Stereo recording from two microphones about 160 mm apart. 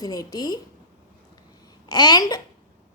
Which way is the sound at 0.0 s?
25° left (ahead or behind).